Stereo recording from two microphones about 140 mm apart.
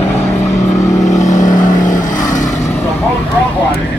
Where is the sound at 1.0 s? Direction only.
60° left (ahead or behind).